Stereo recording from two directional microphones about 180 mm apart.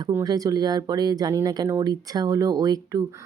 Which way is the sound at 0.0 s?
20° right (ahead or behind).